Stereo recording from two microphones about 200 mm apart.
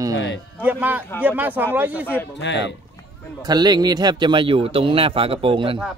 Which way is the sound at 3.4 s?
20° right (ahead or behind).